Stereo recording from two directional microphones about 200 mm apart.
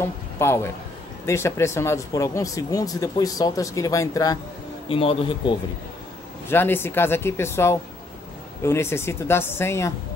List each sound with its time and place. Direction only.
0.0 s a man's voice: 10° left (ahead or behind)
4.8 s speech: 25° left (ahead or behind)
6.5 s speech: 10° left (ahead or behind)